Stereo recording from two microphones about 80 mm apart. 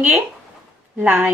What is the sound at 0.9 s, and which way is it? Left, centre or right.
Speech, centre.